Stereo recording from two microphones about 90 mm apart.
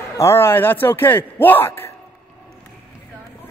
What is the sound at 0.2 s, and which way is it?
A man's voice, 30° left (ahead or behind).